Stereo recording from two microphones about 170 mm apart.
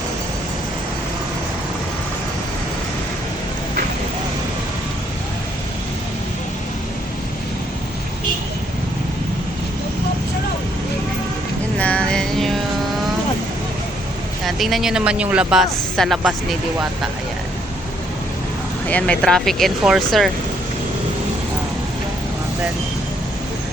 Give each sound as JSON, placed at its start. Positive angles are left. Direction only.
{"t": 11.8, "sound": "music", "side_deg": 5}
{"t": 14.4, "sound": "speech", "side_deg": 0}
{"t": 18.9, "sound": "speech", "side_deg": 10}